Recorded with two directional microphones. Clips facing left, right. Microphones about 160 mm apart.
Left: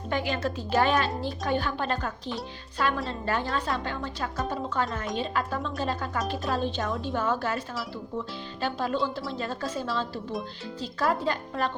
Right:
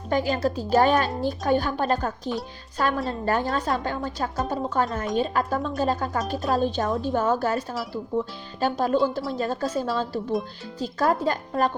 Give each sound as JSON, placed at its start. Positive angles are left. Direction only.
{"t": 0.1, "sound": "speech", "side_deg": -40}
{"t": 8.6, "sound": "speech", "side_deg": -45}